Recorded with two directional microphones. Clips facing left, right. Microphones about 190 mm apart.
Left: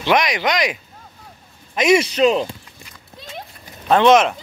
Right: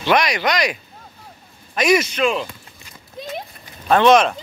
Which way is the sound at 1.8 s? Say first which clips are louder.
Left 2 dB; 25° left (ahead or behind).